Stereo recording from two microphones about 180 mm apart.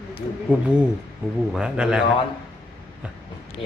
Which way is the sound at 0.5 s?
10° right (ahead or behind).